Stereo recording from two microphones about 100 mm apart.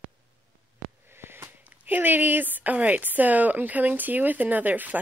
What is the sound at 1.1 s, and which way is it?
Speech, 25° right (ahead or behind).